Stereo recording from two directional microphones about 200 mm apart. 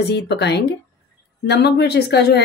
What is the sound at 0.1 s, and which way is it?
Speech, 55° left (ahead or behind).